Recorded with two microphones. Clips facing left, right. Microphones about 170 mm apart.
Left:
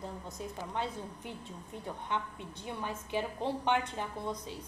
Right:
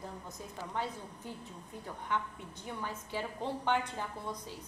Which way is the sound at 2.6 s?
20° left (ahead or behind).